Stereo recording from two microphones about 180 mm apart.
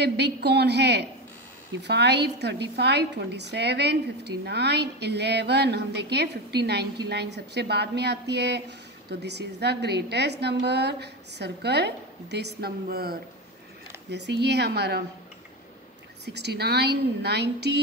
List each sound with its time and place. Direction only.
0.0 s a woman's voice: 65° right (ahead or behind)
16.3 s a woman's voice: 65° right (ahead or behind)